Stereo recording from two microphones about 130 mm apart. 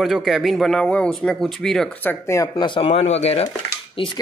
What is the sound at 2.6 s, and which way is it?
Speech, 40° left (ahead or behind).